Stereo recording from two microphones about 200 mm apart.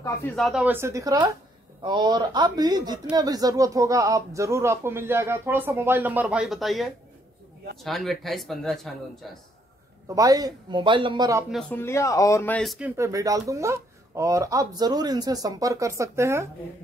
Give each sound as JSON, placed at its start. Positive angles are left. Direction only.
{"t": 0.4, "sound": "a man's voice", "side_deg": 0}
{"t": 10.0, "sound": "speech", "side_deg": -15}
{"t": 11.5, "sound": "a man's voice", "side_deg": 10}